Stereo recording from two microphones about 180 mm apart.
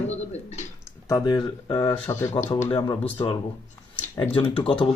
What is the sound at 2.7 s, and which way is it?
A man's voice, 25° left (ahead or behind).